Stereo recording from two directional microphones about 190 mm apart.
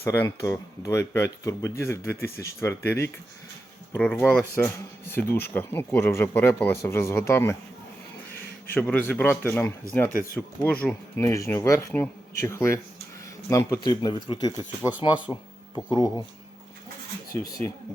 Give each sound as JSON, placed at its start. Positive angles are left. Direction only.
{"t": 0.0, "sound": "speech", "side_deg": 15}
{"t": 8.7, "sound": "speech", "side_deg": 10}
{"t": 15.3, "sound": "speech", "side_deg": -5}
{"t": 15.7, "sound": "speech", "side_deg": 20}
{"t": 17.3, "sound": "speech", "side_deg": 15}